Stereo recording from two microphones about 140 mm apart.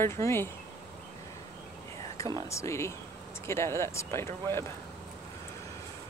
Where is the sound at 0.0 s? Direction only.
20° left (ahead or behind).